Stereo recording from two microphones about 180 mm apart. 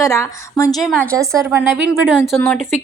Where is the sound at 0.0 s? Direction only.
15° left (ahead or behind).